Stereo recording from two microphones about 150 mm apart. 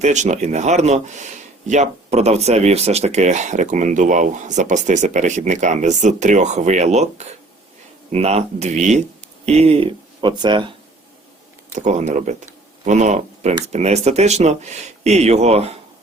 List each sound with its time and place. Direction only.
0.0 s speech: 50° right (ahead or behind); by 10.7 s 30° right (ahead or behind)
11.7 s speech: 50° right (ahead or behind)